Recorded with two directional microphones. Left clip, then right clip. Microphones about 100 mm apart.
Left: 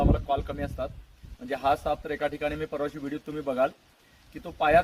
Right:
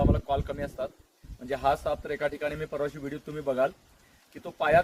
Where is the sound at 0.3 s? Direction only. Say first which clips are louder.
Left 1 dB; 40° right (ahead or behind).